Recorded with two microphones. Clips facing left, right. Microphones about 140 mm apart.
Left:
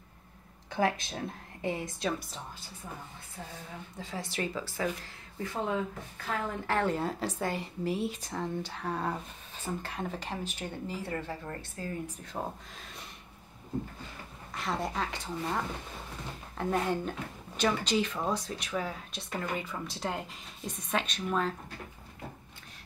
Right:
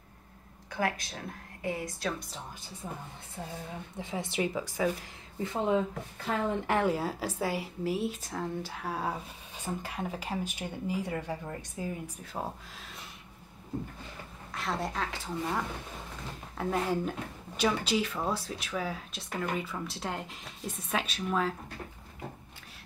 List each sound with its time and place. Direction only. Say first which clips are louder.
0.7 s a woman's voice: left 3 dB; 25° left (ahead or behind)
3.9 s a woman's voice: right 3 dB; 20° right (ahead or behind)
6.9 s speech: right 1 dB; 5° right (ahead or behind)
14.5 s speech: even; centre (ahead or behind)